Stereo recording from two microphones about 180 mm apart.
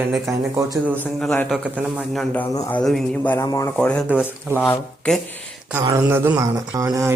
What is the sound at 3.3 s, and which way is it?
Speech, 20° left (ahead or behind).